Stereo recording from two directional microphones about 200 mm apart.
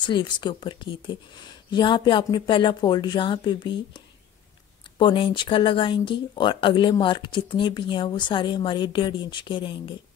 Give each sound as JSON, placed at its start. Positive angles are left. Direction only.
{"t": 0.0, "sound": "speech", "side_deg": 20}
{"t": 4.9, "sound": "speech", "side_deg": 25}